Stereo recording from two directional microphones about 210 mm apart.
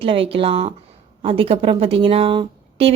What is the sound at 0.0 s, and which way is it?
A woman's voice, 25° right (ahead or behind).